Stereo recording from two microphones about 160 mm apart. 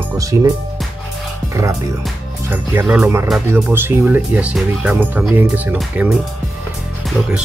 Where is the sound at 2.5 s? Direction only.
10° right (ahead or behind).